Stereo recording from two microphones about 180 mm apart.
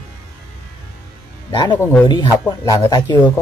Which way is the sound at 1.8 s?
10° left (ahead or behind).